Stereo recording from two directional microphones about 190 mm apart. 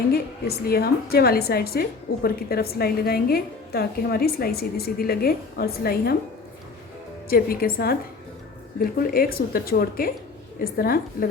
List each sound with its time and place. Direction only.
0.1 s a woman's voice: 55° left (ahead or behind)
7.3 s a woman's voice: 50° left (ahead or behind)